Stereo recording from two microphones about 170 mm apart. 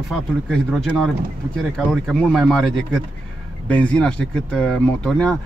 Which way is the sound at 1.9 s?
5° left (ahead or behind).